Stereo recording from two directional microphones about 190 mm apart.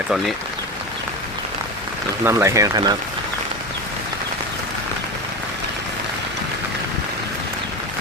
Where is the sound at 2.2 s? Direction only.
15° right (ahead or behind).